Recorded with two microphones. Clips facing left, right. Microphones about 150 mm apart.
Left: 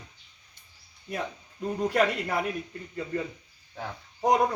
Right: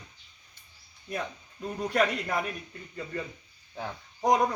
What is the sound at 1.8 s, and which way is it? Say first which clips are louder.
Speech: left 1 dB; 10° left (ahead or behind).